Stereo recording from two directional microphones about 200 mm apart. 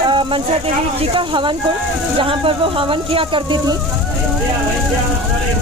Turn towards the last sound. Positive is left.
turn(degrees=-25)  # may be behind; listen again after turning